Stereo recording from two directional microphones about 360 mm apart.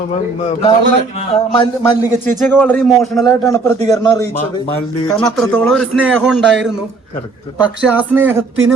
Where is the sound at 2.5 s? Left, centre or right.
Centre.